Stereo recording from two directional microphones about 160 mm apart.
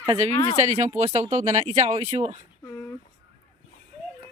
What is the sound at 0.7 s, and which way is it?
Speech, 45° right (ahead or behind).